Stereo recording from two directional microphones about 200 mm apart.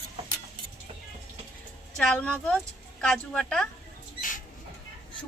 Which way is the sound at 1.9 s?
5° left (ahead or behind).